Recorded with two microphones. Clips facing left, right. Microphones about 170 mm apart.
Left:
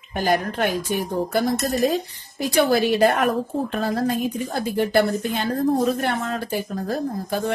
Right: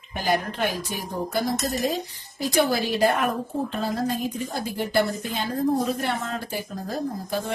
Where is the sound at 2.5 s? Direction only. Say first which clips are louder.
Left 4 dB; 60° left (ahead or behind).